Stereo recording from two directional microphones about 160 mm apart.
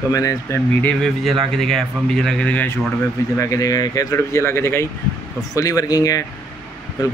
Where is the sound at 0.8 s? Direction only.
Centre (ahead or behind).